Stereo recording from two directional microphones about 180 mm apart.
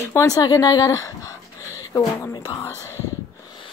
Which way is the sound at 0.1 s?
20° left (ahead or behind).